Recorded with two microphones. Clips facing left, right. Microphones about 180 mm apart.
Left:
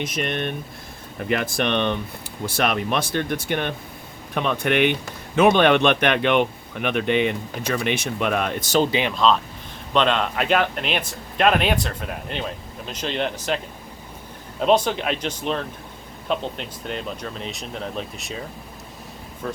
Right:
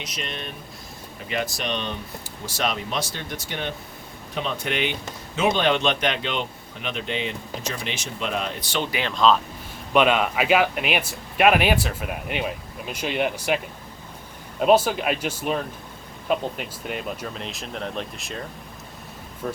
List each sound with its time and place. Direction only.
0.0 s speech: 55° left (ahead or behind)
8.9 s speech: 20° left (ahead or behind)
9.1 s speech: centre (ahead or behind)
14.6 s speech: 5° right (ahead or behind)
19.4 s speech: 10° right (ahead or behind)